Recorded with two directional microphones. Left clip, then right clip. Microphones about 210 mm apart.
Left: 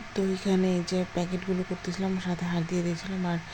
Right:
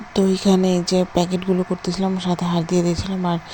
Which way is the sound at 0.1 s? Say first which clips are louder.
Right 10 dB; 25° right (ahead or behind).